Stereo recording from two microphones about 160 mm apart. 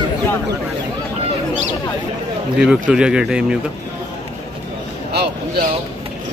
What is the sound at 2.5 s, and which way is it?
Speech, 5° right (ahead or behind).